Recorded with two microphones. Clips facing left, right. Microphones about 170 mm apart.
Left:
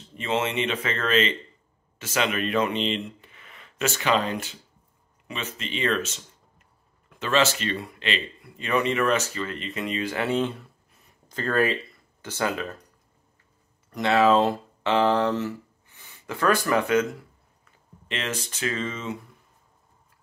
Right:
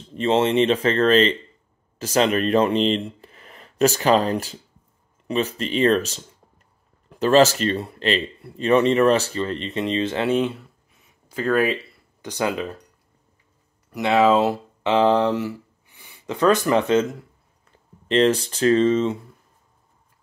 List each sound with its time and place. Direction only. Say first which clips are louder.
0.1 s speech: right 8 dB; 30° right (ahead or behind)
10.9 s a sound: right 1 dB; centre (ahead or behind)
12.2 s speech: right 3 dB; 15° right (ahead or behind)
13.8 s speech: right 3 dB; 10° right (ahead or behind); by 19.1 s 30° right (ahead or behind)